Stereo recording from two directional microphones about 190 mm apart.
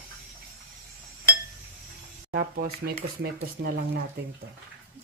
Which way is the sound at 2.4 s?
55° right (ahead or behind).